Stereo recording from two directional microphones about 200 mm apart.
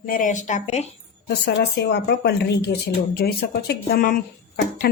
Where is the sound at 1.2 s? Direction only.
55° left (ahead or behind).